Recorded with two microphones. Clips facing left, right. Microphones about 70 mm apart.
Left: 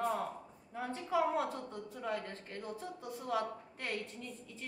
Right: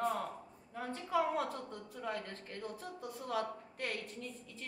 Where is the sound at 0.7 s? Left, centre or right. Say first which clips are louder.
Left 1 dB; left.